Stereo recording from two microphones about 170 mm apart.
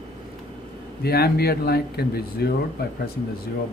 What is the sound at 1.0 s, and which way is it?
Speech, 65° left (ahead or behind).